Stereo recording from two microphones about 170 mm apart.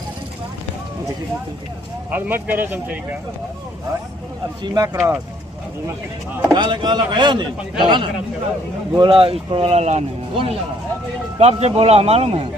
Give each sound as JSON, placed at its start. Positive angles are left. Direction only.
{"t": 2.1, "sound": "speech", "side_deg": -10}
{"t": 4.6, "sound": "speech", "side_deg": -25}
{"t": 6.5, "sound": "speech", "side_deg": -25}